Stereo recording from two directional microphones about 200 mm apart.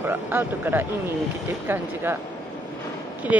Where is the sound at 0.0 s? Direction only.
10° right (ahead or behind).